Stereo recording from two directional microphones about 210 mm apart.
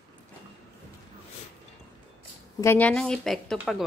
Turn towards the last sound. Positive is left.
turn(degrees=0)  # may be behind; listen again after turning